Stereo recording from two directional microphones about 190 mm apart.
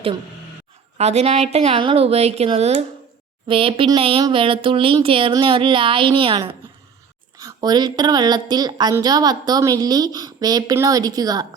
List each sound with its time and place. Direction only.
0.9 s a woman's voice: 35° right (ahead or behind); by 11.4 s 20° right (ahead or behind)